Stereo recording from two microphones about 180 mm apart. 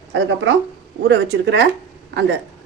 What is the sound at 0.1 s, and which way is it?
Speech, 90° right.